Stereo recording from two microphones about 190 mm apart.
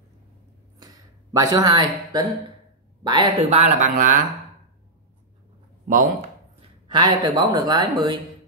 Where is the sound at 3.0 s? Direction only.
25° right (ahead or behind).